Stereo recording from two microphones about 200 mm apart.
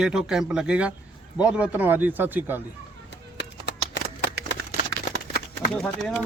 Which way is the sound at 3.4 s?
60° left (ahead or behind).